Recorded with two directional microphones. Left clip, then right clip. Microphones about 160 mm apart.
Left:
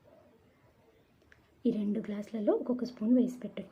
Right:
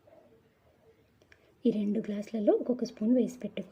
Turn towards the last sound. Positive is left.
turn(degrees=-35)  # may be behind; listen again after turning